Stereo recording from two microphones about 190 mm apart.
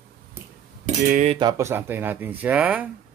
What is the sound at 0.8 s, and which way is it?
Speech, 40° right (ahead or behind).